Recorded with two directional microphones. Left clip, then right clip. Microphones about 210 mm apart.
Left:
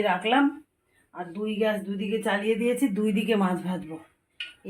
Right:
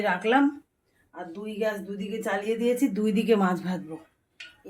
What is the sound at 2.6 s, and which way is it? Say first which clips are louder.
Speech: even; 5° left (ahead or behind).